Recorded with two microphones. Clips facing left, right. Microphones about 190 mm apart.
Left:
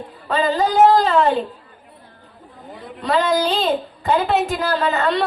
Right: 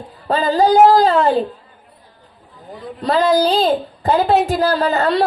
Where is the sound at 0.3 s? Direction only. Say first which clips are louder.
Right 4 dB; 35° right (ahead or behind).